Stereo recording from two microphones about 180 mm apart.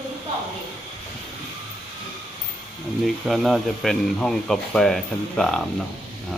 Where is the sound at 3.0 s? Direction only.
Centre (ahead or behind).